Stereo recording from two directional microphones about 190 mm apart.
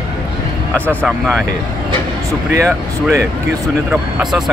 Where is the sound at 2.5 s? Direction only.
15° right (ahead or behind).